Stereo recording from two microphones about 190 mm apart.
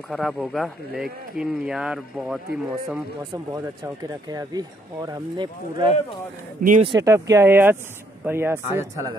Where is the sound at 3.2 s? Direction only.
15° right (ahead or behind).